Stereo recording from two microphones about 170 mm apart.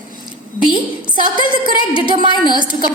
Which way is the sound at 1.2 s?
25° right (ahead or behind).